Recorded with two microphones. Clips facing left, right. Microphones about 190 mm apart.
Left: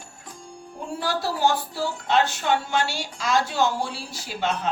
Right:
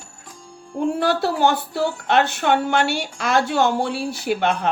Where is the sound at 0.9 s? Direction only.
60° right (ahead or behind).